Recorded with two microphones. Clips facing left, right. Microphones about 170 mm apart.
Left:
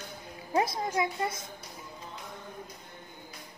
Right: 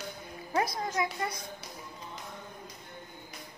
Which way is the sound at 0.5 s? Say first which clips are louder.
Left 2 dB; 25° left (ahead or behind).